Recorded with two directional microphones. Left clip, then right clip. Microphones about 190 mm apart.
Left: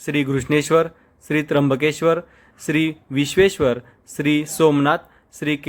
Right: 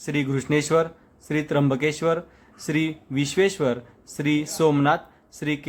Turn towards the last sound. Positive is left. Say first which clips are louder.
# left 4 dB
turn(degrees=20)  # may be behind; listen again after turning